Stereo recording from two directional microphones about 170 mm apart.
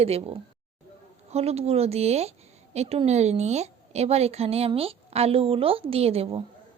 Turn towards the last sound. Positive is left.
turn(degrees=-35)  # may be behind; listen again after turning